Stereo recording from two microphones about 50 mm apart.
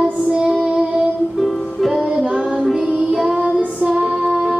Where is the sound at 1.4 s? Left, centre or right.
Centre.